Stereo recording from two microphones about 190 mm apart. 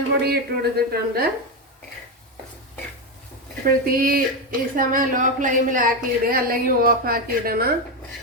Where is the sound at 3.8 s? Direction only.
50° right (ahead or behind).